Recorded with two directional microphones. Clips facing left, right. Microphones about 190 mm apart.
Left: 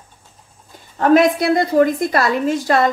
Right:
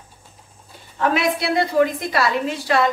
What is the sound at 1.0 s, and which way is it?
A woman's voice, 45° left (ahead or behind).